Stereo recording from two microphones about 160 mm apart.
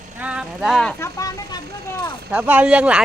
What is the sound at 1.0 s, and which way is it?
Speech, 20° left (ahead or behind).